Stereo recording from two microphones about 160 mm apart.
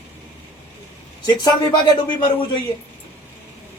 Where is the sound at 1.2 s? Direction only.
25° left (ahead or behind).